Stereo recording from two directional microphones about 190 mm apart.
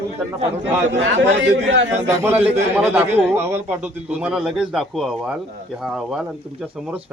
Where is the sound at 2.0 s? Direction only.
10° right (ahead or behind).